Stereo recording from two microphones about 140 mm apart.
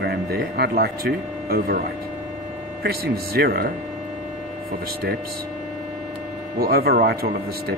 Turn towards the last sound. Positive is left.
turn(degrees=-90)